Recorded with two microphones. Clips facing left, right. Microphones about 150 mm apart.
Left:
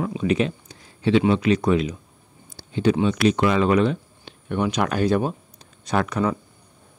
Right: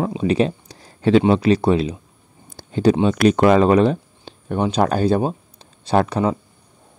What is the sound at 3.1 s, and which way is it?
Speech, 45° right (ahead or behind).